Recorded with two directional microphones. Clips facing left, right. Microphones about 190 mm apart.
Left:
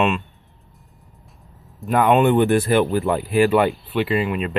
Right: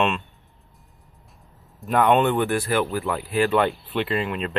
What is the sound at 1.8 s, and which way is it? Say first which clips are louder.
Speech: left 2 dB; centre (ahead or behind).